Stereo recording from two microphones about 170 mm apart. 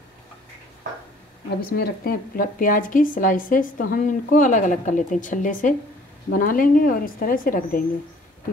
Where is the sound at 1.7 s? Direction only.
65° left (ahead or behind).